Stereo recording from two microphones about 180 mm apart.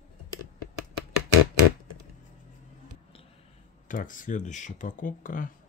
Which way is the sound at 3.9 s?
45° left (ahead or behind).